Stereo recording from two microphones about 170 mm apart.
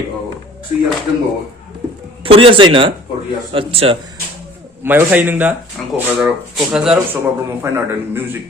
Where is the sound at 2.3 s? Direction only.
30° right (ahead or behind).